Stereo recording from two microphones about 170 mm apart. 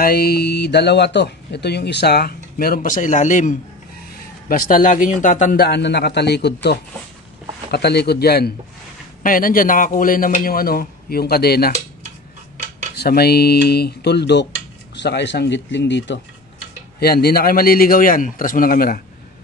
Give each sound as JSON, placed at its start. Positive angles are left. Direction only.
{"t": 0.0, "sound": "speech", "side_deg": 65}
{"t": 5.7, "sound": "speech", "side_deg": 85}
{"t": 9.2, "sound": "a man's voice", "side_deg": 55}
{"t": 12.9, "sound": "speech", "side_deg": 70}
{"t": 17.0, "sound": "a man's voice", "side_deg": 65}